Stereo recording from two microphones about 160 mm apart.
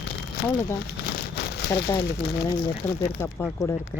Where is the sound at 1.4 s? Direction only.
90° left.